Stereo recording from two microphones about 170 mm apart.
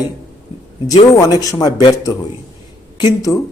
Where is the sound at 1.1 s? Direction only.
20° left (ahead or behind).